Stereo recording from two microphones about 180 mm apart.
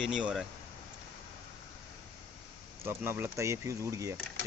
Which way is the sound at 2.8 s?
15° right (ahead or behind).